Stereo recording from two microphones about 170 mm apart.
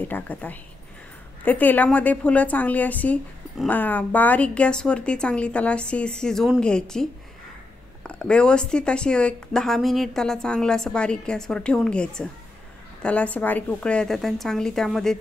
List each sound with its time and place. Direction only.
0.0 s a woman's voice: 10° left (ahead or behind)